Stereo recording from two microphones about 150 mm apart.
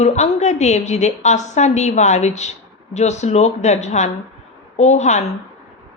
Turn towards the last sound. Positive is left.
turn(degrees=50)  # may be behind; listen again after turning